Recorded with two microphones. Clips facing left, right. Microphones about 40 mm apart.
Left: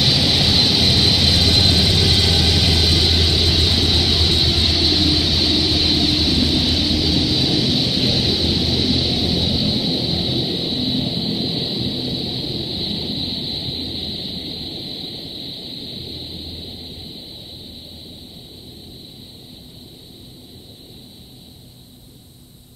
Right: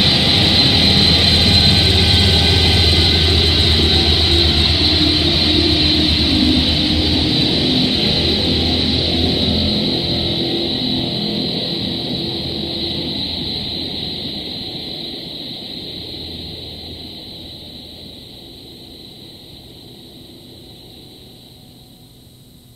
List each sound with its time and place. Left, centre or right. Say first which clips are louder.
0.0 s vehicle: right 3 dB; right